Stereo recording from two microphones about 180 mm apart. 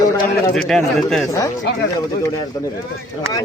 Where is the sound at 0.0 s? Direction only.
20° left (ahead or behind).